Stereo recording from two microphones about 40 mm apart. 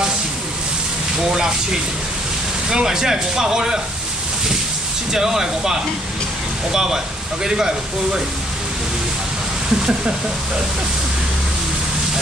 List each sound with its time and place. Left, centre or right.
2.7 s speech: centre
5.1 s speech: centre